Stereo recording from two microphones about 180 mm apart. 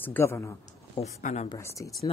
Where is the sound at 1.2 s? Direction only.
40° left (ahead or behind).